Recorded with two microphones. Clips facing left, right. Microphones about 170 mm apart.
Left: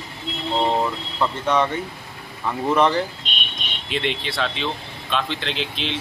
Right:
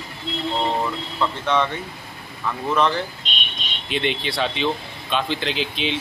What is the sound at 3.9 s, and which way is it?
Speech, centre (ahead or behind).